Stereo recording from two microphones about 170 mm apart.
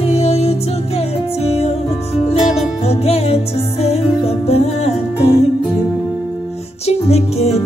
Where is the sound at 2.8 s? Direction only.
35° left (ahead or behind).